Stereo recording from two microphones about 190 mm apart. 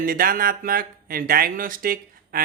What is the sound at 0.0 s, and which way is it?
Speech, 50° right (ahead or behind).